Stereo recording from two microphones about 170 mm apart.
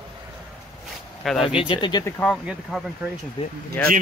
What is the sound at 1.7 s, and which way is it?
Speech, 25° left (ahead or behind).